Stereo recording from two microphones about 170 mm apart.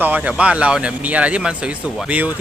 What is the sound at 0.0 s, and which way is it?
Speech, 10° right (ahead or behind).